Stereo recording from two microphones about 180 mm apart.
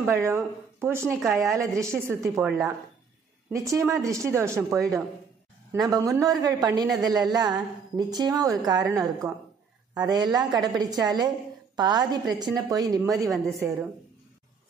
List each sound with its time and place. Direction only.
0.0 s speech: 15° right (ahead or behind)
2.4 s speech: 5° right (ahead or behind)
3.5 s a woman's voice: 15° right (ahead or behind)